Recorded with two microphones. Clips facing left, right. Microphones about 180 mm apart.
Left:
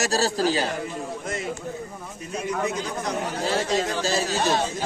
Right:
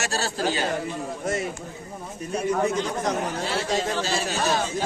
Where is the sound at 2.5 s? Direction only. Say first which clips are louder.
Right 3 dB; 35° right (ahead or behind).